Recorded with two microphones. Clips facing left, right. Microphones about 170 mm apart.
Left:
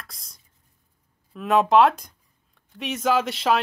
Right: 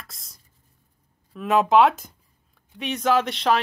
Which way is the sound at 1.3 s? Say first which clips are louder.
Even; centre (ahead or behind).